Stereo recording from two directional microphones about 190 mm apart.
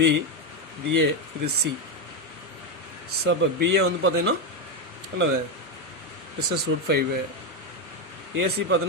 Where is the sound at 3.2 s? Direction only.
70° right (ahead or behind).